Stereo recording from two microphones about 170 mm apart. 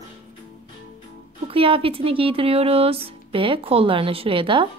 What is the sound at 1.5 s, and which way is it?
A woman's voice, 30° right (ahead or behind).